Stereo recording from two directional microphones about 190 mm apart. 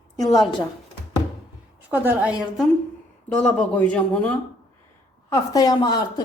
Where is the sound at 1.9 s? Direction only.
10° right (ahead or behind); by 4.3 s 5° left (ahead or behind).